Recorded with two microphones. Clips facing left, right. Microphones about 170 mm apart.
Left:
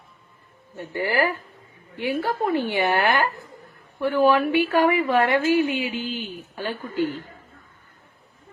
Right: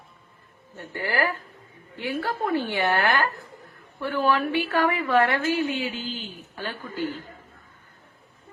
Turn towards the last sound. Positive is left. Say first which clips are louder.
# left 5 dB
turn(degrees=15)  # may be behind; listen again after turning